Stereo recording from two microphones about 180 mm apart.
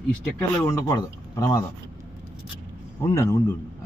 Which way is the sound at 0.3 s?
15° left (ahead or behind).